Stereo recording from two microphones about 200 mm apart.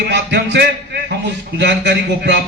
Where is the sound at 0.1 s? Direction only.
60° right (ahead or behind).